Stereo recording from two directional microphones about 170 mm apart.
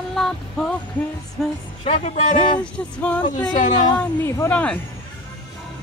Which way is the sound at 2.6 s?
5° left (ahead or behind).